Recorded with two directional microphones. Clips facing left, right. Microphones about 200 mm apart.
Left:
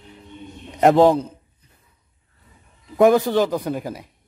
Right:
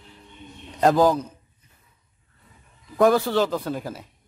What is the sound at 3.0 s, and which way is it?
A man's voice, 15° left (ahead or behind).